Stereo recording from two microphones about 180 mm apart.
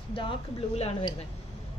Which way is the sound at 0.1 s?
30° left (ahead or behind).